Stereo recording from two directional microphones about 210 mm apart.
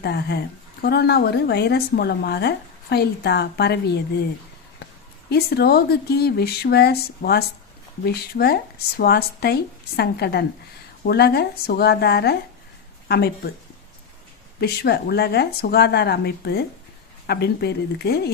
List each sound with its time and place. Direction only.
0.0 s speech: 55° left (ahead or behind)
5.3 s speech: 50° left (ahead or behind)
14.6 s speech: 50° left (ahead or behind)